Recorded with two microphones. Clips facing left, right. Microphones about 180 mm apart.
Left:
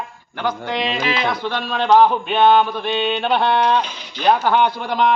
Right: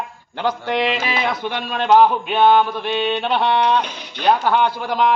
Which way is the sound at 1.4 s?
15° right (ahead or behind).